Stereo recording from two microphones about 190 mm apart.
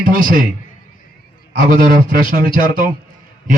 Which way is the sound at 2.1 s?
45° right (ahead or behind).